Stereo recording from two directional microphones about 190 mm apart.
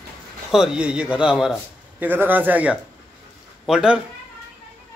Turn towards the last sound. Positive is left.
turn(degrees=-5)  # may be behind; listen again after turning